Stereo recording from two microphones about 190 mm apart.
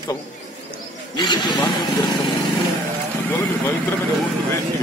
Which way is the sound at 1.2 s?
25° left (ahead or behind).